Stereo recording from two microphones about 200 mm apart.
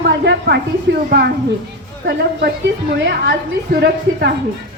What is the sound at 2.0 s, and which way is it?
Speech, 55° right (ahead or behind).